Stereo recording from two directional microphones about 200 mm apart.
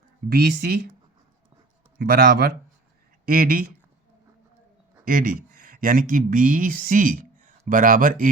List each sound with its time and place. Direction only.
0.3 s speech: 50° right (ahead or behind)
2.0 s speech: 50° right (ahead or behind)
5.0 s speech: 45° right (ahead or behind)